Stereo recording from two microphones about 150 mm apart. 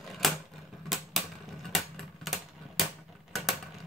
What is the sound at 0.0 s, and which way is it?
Typewriter, centre (ahead or behind).